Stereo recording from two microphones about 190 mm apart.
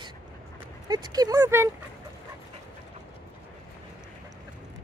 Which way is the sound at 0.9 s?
20° right (ahead or behind).